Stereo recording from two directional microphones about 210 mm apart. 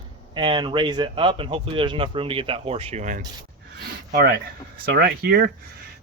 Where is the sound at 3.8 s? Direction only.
45° right (ahead or behind).